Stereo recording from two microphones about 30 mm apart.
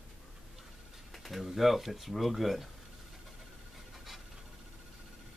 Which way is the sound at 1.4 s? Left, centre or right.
Centre.